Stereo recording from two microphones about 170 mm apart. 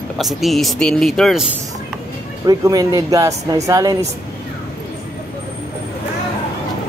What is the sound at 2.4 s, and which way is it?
Speech, 20° right (ahead or behind).